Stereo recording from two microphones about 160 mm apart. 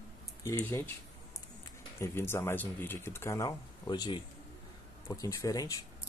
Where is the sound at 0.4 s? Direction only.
15° left (ahead or behind).